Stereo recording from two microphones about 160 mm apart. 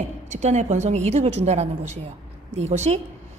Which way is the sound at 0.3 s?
45° right (ahead or behind).